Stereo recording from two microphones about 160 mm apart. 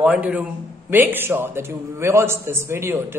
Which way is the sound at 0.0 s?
10° right (ahead or behind).